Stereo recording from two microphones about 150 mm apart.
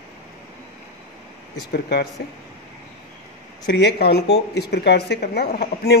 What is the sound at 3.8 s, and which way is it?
Speech, 90° left.